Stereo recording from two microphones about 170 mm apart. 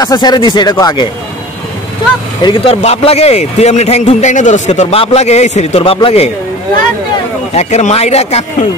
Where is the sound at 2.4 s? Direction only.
30° left (ahead or behind).